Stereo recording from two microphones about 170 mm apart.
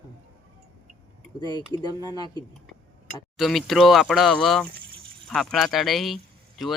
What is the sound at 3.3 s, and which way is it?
Speech, centre (ahead or behind).